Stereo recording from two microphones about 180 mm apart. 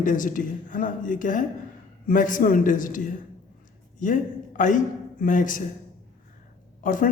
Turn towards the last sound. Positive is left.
turn(degrees=50)  # may be behind; listen again after turning